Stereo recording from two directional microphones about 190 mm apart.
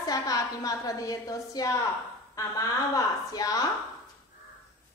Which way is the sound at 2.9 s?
20° left (ahead or behind).